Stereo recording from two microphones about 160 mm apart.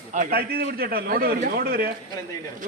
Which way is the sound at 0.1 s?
60° right (ahead or behind).